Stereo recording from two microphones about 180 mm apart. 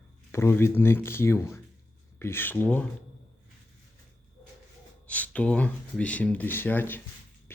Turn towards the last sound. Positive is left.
turn(degrees=10)  # may be behind; listen again after turning